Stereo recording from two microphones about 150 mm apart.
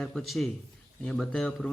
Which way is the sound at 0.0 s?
Centre (ahead or behind).